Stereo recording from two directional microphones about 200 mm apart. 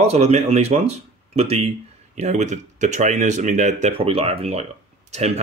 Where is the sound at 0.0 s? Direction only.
35° right (ahead or behind).